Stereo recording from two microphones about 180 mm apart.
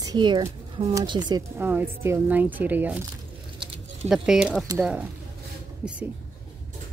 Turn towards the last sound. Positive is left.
turn(degrees=-5)  # may be behind; listen again after turning